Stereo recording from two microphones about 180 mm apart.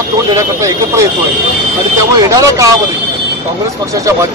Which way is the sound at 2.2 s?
20° right (ahead or behind).